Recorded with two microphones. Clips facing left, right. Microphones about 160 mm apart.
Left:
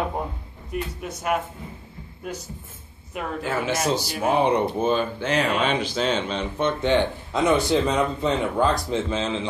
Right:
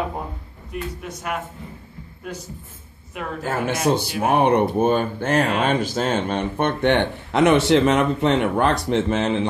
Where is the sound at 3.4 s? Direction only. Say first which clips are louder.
Right 3 dB; 50° right (ahead or behind).